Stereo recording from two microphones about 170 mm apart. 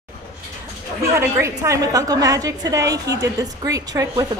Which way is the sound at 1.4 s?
20° right (ahead or behind).